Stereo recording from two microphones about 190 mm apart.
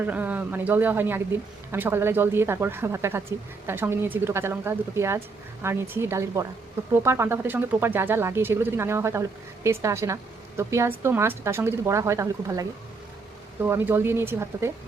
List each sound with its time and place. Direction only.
0.0 s speech: 10° right (ahead or behind)